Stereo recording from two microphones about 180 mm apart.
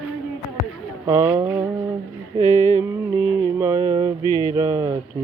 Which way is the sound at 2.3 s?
25° right (ahead or behind).